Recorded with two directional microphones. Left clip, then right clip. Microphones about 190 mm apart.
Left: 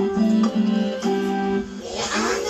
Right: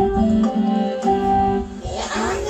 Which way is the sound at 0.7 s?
20° left (ahead or behind).